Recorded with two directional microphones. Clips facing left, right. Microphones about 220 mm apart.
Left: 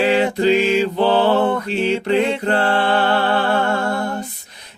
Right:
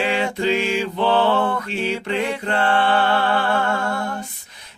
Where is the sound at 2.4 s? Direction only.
40° left (ahead or behind).